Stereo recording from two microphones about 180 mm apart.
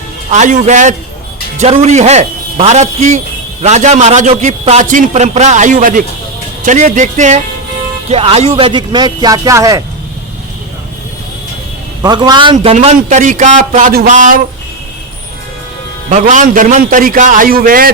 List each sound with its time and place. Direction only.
0.3 s a man's voice: 40° right (ahead or behind); by 9.8 s 15° right (ahead or behind)
12.0 s speech: 25° right (ahead or behind)
12.7 s a man's voice: 40° right (ahead or behind)
16.0 s a man's voice: 45° right (ahead or behind)